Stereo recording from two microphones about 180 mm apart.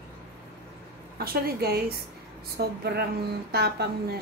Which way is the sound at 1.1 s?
60° right (ahead or behind).